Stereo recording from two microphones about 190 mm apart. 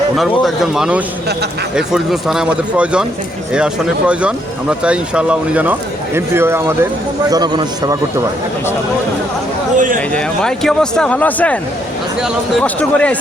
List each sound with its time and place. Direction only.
0.2 s a man's voice: centre (ahead or behind); by 7.9 s 20° right (ahead or behind)
9.7 s speech: 45° right (ahead or behind)
10.1 s speech: 5° left (ahead or behind)